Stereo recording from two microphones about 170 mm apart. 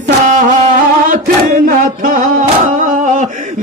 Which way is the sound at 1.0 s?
50° right (ahead or behind).